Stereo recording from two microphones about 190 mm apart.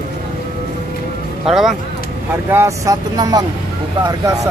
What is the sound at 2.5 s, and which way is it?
Speech, 15° right (ahead or behind).